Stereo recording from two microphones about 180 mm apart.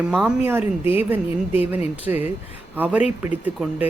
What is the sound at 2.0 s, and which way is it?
Speech, 10° right (ahead or behind).